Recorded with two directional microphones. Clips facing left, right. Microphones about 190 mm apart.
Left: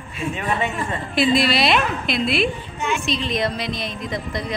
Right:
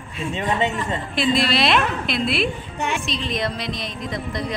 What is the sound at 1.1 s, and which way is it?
Speech, centre (ahead or behind).